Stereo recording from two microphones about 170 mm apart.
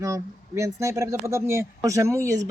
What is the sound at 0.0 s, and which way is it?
Speech, 20° right (ahead or behind).